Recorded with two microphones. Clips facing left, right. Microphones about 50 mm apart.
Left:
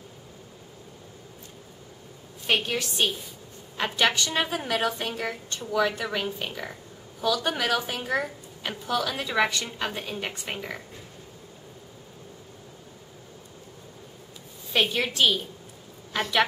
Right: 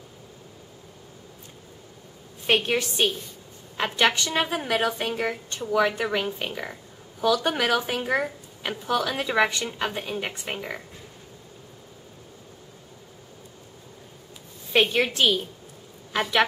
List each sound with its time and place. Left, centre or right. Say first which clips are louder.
2.5 s a woman's voice: right 3 dB; right
3.0 s a woman's voice: right 2 dB; centre
14.8 s a woman's voice: right 2 dB; centre